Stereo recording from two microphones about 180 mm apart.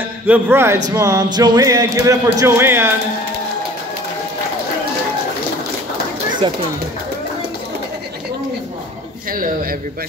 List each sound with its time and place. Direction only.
0.3 s speech: 10° right (ahead or behind)
6.4 s speech: 25° right (ahead or behind)
9.3 s a man's voice: 55° right (ahead or behind)